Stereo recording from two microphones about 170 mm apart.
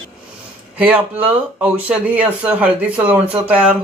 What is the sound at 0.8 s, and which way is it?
Speech, 10° right (ahead or behind).